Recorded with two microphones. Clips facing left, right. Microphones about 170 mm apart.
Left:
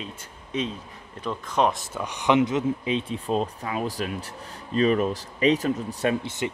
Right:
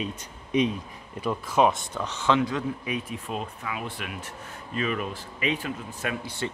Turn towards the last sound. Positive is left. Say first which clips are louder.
# left 3 dB
turn(degrees=20)  # may be behind; listen again after turning